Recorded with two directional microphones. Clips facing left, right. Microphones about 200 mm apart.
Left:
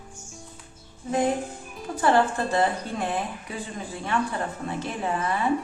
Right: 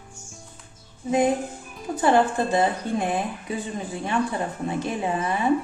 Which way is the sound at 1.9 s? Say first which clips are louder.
Right 2 dB; 15° right (ahead or behind).